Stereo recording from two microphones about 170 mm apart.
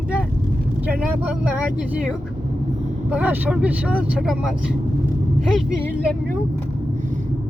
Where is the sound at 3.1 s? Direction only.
10° right (ahead or behind).